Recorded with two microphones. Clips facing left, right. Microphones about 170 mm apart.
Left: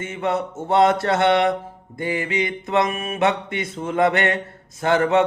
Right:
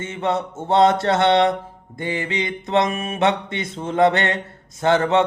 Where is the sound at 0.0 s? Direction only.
25° right (ahead or behind).